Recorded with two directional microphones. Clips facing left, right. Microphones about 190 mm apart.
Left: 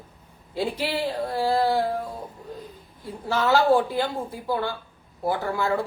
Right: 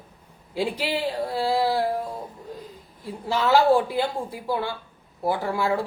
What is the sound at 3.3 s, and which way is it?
A man's voice, 10° right (ahead or behind).